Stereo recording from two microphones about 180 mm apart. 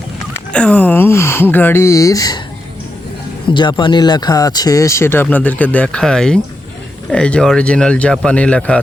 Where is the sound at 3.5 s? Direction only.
25° left (ahead or behind).